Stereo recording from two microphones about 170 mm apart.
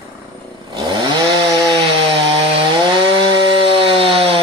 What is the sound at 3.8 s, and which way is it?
Chainsaw, 30° right (ahead or behind).